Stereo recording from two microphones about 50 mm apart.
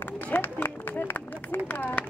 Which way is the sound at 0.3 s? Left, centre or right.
Left.